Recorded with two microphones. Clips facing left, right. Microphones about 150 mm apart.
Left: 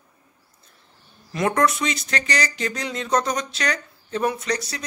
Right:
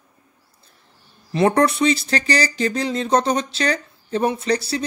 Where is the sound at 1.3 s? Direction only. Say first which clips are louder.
Right 4 dB; 30° right (ahead or behind).